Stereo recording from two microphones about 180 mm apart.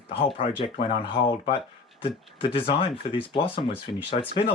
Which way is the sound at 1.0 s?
30° left (ahead or behind).